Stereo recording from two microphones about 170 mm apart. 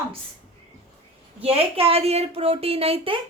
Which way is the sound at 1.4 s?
35° right (ahead or behind).